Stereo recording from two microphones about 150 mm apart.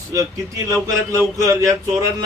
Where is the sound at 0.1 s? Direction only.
20° right (ahead or behind).